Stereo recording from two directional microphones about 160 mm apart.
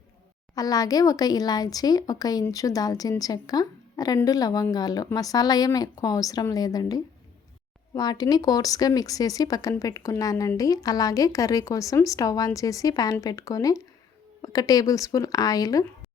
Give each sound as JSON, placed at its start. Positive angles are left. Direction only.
{"t": 0.5, "sound": "speech", "side_deg": 20}